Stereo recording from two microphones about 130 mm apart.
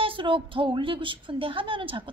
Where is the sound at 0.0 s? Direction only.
40° right (ahead or behind).